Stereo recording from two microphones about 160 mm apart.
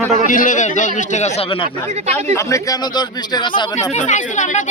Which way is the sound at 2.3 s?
20° left (ahead or behind).